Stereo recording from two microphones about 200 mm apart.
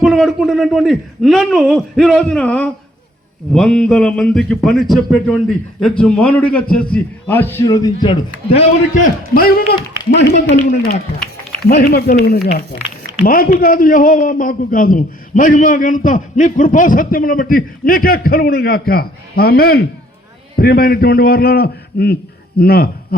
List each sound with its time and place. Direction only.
0.0 s a man's voice: centre (ahead or behind); by 9.0 s 30° left (ahead or behind)
9.3 s a man's voice: 45° left (ahead or behind)
10.5 s a man's voice: 35° left (ahead or behind)
11.7 s a man's voice: 50° left (ahead or behind)